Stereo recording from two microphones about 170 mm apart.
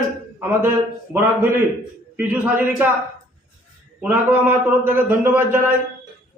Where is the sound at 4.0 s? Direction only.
10° right (ahead or behind).